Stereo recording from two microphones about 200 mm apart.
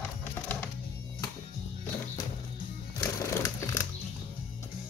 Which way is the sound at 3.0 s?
15° left (ahead or behind).